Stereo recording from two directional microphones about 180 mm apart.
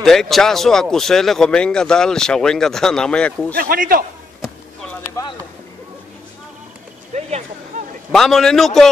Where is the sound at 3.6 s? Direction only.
55° right (ahead or behind).